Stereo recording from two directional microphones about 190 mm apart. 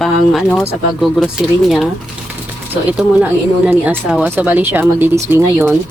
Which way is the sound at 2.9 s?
5° right (ahead or behind).